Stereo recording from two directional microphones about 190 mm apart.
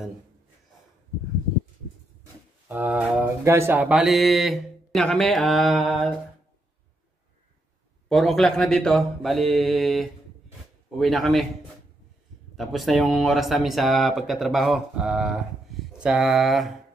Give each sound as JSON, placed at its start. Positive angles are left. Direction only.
{"t": 2.7, "sound": "speech", "side_deg": -10}
{"t": 8.1, "sound": "speech", "side_deg": 0}
{"t": 12.5, "sound": "speech", "side_deg": 0}